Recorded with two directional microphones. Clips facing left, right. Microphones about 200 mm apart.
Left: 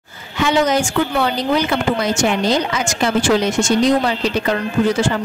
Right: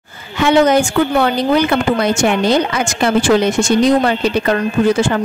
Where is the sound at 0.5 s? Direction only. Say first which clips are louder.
Right 6 dB; 60° right (ahead or behind).